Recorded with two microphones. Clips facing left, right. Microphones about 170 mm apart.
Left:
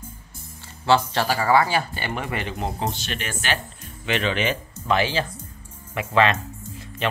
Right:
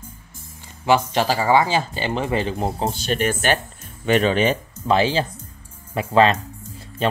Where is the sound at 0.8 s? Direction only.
15° right (ahead or behind).